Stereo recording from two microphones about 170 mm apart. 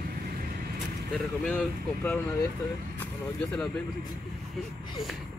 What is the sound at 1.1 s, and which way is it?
Speech, 5° left (ahead or behind).